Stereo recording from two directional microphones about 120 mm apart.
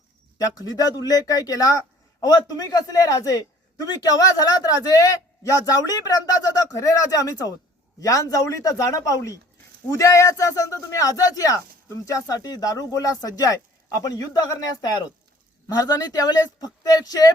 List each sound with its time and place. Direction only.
0.3 s a man's voice: 30° left (ahead or behind)